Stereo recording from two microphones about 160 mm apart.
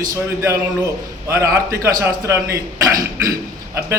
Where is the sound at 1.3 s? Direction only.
15° right (ahead or behind).